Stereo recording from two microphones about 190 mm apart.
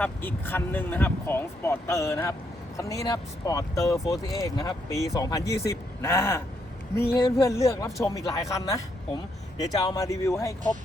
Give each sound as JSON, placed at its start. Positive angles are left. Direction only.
{"t": 0.0, "sound": "speech", "side_deg": 10}